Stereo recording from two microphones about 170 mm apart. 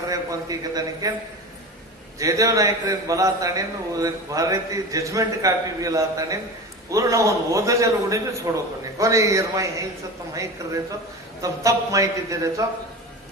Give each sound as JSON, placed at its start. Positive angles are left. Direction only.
{"t": 0.1, "sound": "a man's voice", "side_deg": -20}
{"t": 2.1, "sound": "a man's voice", "side_deg": -20}